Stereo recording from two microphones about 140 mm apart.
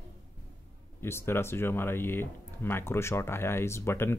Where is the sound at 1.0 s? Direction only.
15° left (ahead or behind).